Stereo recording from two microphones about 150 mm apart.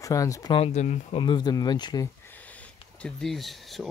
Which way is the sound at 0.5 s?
45° left (ahead or behind).